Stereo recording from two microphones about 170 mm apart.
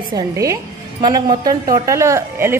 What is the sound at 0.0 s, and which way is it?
A woman's voice, 25° right (ahead or behind).